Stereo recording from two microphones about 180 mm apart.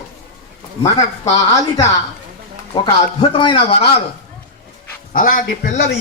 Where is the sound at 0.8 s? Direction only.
20° left (ahead or behind).